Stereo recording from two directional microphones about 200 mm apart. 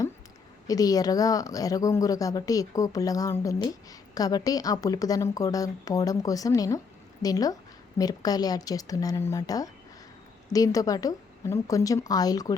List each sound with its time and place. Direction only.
0.7 s a woman's voice: 20° left (ahead or behind)